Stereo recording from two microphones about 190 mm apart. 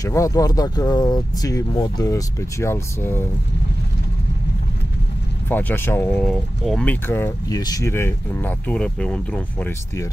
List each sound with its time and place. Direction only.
0.0 s speech: 15° left (ahead or behind)
5.5 s speech: 10° left (ahead or behind)